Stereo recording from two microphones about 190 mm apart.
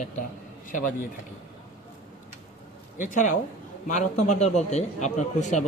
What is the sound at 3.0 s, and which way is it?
A man's voice, 40° left (ahead or behind).